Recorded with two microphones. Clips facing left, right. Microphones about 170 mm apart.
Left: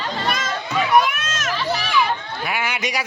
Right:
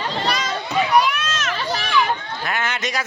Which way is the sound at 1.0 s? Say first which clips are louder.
Right 1 dB; 50° left (ahead or behind).